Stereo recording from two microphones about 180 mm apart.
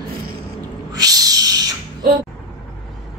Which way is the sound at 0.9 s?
20° right (ahead or behind).